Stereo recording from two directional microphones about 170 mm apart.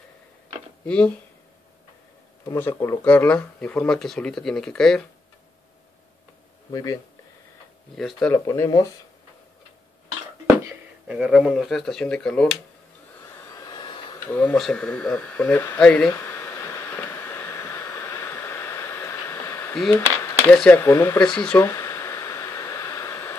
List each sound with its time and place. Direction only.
0.8 s speech: 5° left (ahead or behind)
2.4 s speech: 20° left (ahead or behind)
6.7 s speech: 20° left (ahead or behind)
8.0 s speech: 5° left (ahead or behind)
8.5 s speech: 20° left (ahead or behind)
11.1 s speech: 5° right (ahead or behind)
13.5 s hair dryer: 20° left (ahead or behind)
14.2 s speech: 10° left (ahead or behind)
16.1 s a sound: 15° left (ahead or behind)
20.4 s speech: 5° left (ahead or behind)
21.3 s a sound: 5° left (ahead or behind)